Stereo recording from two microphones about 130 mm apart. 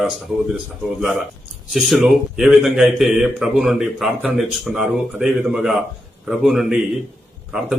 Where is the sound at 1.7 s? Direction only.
Centre (ahead or behind).